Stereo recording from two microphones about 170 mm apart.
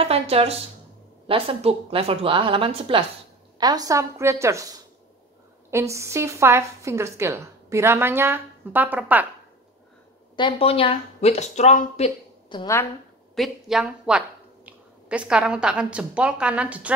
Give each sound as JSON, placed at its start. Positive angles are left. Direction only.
{"t": 0.0, "sound": "a woman's voice", "side_deg": -35}
{"t": 10.3, "sound": "speech", "side_deg": 30}
{"t": 12.4, "sound": "a woman's voice", "side_deg": 25}
{"t": 13.3, "sound": "a woman's voice", "side_deg": 0}